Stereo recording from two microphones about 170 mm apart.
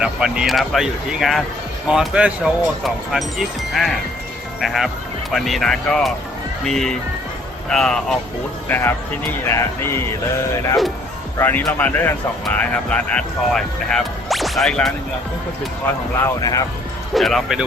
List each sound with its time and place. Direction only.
0.0 s a man's voice: 5° right (ahead or behind); by 10.2 s 15° left (ahead or behind)
11.3 s a man's voice: 10° left (ahead or behind)
16.2 s speech: 20° left (ahead or behind)
17.2 s speech: centre (ahead or behind)